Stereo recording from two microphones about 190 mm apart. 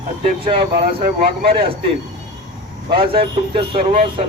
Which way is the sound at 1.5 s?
30° right (ahead or behind).